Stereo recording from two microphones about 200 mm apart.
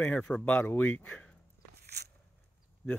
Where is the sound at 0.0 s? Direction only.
10° left (ahead or behind).